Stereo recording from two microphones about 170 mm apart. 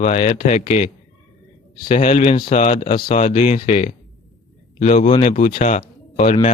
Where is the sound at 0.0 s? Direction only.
45° left (ahead or behind).